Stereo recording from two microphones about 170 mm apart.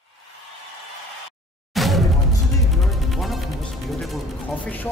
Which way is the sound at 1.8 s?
Centre (ahead or behind).